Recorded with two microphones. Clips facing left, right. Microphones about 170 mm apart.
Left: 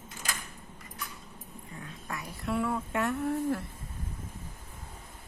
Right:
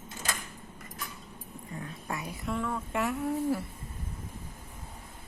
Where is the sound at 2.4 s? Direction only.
5° left (ahead or behind).